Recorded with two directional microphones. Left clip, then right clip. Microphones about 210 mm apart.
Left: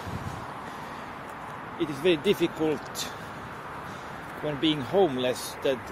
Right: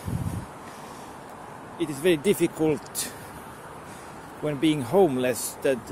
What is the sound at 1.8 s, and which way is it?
Speech, 15° right (ahead or behind).